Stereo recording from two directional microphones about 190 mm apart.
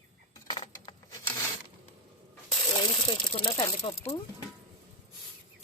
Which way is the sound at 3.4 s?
25° left (ahead or behind).